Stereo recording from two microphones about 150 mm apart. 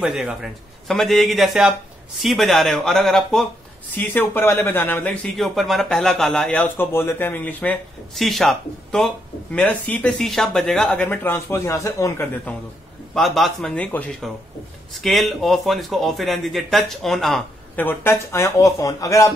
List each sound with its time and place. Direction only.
0.0 s speech: 5° right (ahead or behind)
3.9 s speech: 10° left (ahead or behind)
13.1 s speech: centre (ahead or behind)
17.7 s speech: 15° left (ahead or behind)